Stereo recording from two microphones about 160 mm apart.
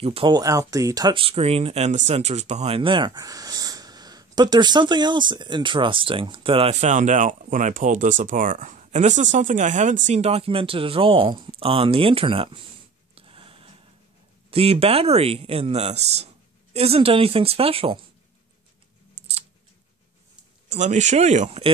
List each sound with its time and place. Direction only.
0.0 s speech: 35° right (ahead or behind)
0.4 s speech: 20° right (ahead or behind)
13.1 s a sound: 35° right (ahead or behind)
14.5 s speech: 40° right (ahead or behind)
19.2 s scissors: 45° right (ahead or behind)
20.7 s speech: 45° right (ahead or behind)